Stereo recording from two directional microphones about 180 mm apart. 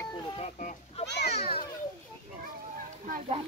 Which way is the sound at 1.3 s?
35° left (ahead or behind).